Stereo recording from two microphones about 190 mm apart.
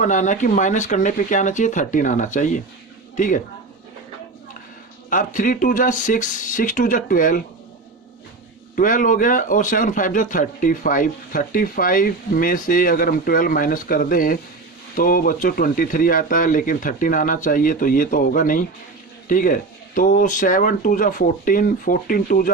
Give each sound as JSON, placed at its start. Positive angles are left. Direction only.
{"t": 0.0, "sound": "a man's voice", "side_deg": 40}
{"t": 5.0, "sound": "a man's voice", "side_deg": 45}
{"t": 8.7, "sound": "a man's voice", "side_deg": 45}